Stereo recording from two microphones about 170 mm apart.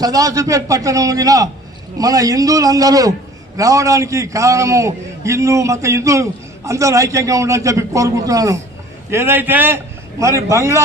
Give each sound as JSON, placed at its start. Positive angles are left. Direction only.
{"t": 0.0, "sound": "a man's voice", "side_deg": -20}